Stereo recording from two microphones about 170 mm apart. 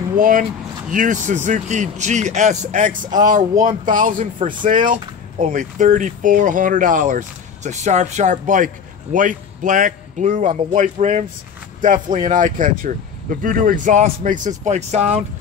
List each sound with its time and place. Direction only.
0.2 s speech: 50° right (ahead or behind)